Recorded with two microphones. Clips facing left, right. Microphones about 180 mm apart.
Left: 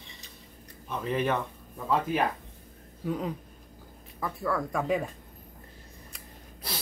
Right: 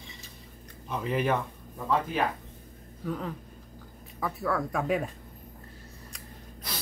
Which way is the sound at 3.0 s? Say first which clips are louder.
Left 2 dB; 15° left (ahead or behind).